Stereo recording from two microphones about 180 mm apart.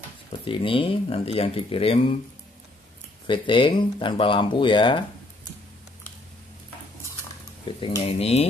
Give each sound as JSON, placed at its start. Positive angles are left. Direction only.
{"t": 0.5, "sound": "speech", "side_deg": 30}
{"t": 3.3, "sound": "speech", "side_deg": 30}
{"t": 7.7, "sound": "speech", "side_deg": 25}